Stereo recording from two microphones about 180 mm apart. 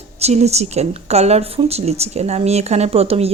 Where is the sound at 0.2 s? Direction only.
35° right (ahead or behind).